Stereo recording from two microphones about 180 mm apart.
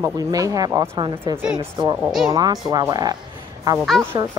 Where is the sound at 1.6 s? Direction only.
25° right (ahead or behind).